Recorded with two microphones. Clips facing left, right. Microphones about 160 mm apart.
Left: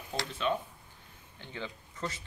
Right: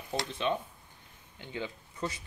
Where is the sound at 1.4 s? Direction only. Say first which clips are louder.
Right 3 dB; 15° right (ahead or behind).